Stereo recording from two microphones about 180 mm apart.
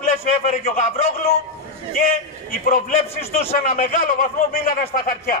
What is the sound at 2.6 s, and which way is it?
Speech, 35° left (ahead or behind).